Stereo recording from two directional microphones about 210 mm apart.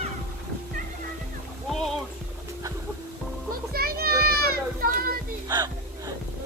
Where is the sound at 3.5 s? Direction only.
45° right (ahead or behind).